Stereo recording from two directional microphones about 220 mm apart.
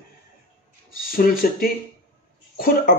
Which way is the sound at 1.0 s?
40° left (ahead or behind).